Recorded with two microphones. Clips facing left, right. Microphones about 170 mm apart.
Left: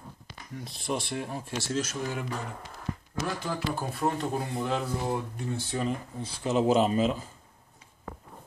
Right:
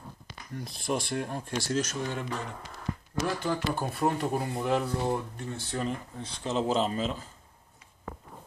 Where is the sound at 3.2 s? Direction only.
Centre (ahead or behind).